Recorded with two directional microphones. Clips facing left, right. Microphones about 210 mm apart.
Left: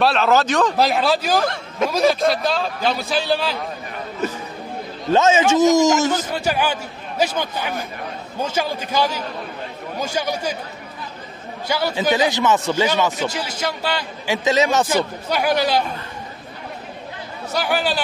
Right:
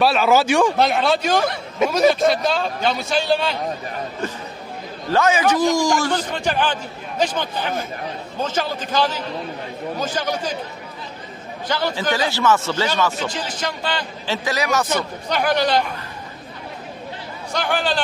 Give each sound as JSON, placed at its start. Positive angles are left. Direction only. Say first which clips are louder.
{"t": 0.0, "sound": "speech", "louder": "right 1 dB", "side_deg": -5}
{"t": 0.7, "sound": "a man's voice", "louder": "even", "side_deg": 0}
{"t": 5.1, "sound": "a man's voice", "louder": "left 2 dB", "side_deg": 25}
{"t": 6.1, "sound": "a man's voice", "louder": "even", "side_deg": 10}
{"t": 11.6, "sound": "a man's voice", "louder": "left 2 dB", "side_deg": 10}
{"t": 14.9, "sound": "a man's voice", "louder": "left 2 dB", "side_deg": 10}
{"t": 17.5, "sound": "a man's voice", "louder": "left 1 dB", "side_deg": 5}